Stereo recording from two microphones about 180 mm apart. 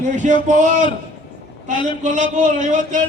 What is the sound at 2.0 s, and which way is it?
A man's voice, 45° right (ahead or behind).